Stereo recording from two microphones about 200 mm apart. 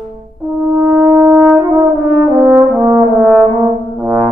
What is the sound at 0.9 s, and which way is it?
Shofar, 15° right (ahead or behind).